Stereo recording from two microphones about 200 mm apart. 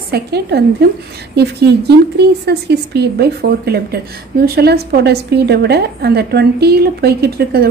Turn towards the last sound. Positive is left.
turn(degrees=-50)  # may be behind; listen again after turning